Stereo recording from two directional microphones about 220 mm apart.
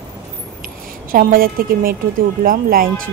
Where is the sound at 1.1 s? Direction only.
40° right (ahead or behind).